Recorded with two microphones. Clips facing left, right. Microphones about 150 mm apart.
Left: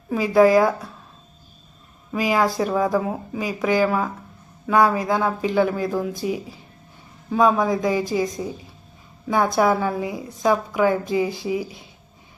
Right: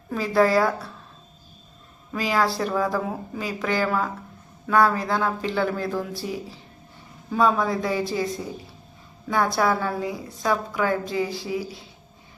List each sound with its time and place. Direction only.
0.1 s speech: 15° left (ahead or behind)
2.1 s speech: 15° left (ahead or behind)
9.2 s a woman's voice: 20° left (ahead or behind)